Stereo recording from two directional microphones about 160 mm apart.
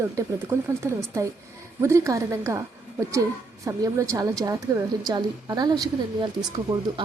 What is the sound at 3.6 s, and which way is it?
Speech, 20° right (ahead or behind).